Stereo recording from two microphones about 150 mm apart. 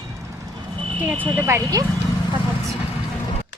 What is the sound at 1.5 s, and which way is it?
Speech, 20° right (ahead or behind).